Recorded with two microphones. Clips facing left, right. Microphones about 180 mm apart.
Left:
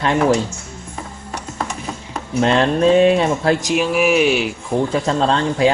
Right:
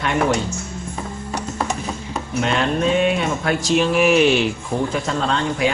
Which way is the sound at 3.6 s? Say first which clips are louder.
Even; 10° left (ahead or behind).